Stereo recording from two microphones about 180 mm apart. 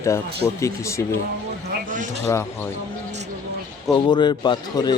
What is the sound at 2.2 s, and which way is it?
Speech, 15° left (ahead or behind).